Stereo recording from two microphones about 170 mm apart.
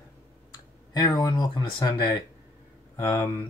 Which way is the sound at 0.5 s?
25° left (ahead or behind).